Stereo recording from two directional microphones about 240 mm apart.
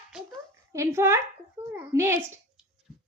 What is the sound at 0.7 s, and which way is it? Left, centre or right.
Speech, centre.